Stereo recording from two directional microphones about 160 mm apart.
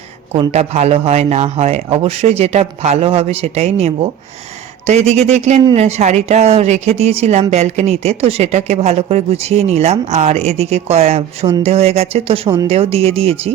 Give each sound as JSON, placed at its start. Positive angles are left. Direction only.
{"t": 0.5, "sound": "speech", "side_deg": -40}